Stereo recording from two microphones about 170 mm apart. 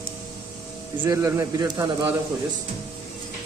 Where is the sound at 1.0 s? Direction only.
20° right (ahead or behind).